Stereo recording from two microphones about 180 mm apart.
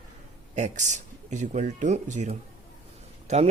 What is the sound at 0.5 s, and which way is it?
Speech, 40° right (ahead or behind).